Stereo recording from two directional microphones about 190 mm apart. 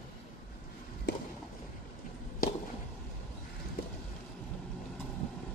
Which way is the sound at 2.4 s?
50° left (ahead or behind).